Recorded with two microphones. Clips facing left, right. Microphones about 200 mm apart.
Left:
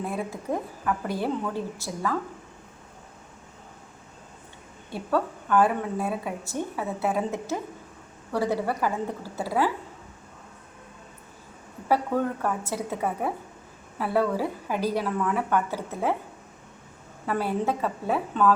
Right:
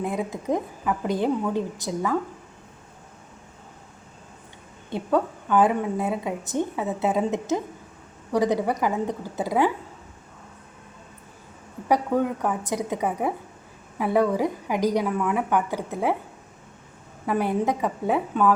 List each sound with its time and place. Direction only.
0.0 s a woman's voice: 20° right (ahead or behind)
4.9 s a woman's voice: 20° right (ahead or behind)
11.9 s a woman's voice: 15° right (ahead or behind)
17.2 s a woman's voice: 15° right (ahead or behind)